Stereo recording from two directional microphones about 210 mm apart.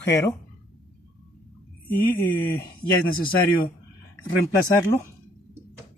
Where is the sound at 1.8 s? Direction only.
10° left (ahead or behind).